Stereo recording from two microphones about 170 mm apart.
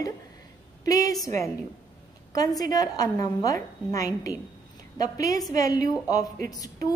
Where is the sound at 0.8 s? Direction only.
20° left (ahead or behind).